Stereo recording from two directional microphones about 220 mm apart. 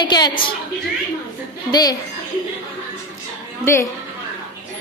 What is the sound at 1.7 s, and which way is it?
Speech, 15° left (ahead or behind).